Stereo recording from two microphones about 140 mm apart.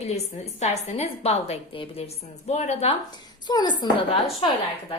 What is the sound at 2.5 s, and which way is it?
Speech, 55° left (ahead or behind).